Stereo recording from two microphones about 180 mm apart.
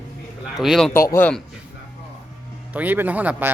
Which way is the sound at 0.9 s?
15° left (ahead or behind).